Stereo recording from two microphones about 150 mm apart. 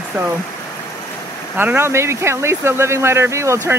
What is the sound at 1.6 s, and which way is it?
Speech, 15° right (ahead or behind).